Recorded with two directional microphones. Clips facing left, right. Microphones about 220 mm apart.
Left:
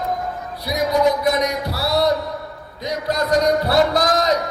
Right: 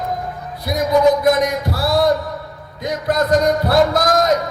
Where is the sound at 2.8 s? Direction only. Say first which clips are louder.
Right 3 dB; 50° right (ahead or behind).